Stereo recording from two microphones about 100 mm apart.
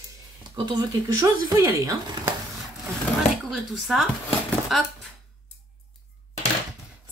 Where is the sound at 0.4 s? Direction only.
50° right (ahead or behind).